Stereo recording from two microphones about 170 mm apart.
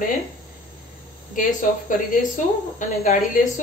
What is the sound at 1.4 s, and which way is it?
Speech, 50° left (ahead or behind).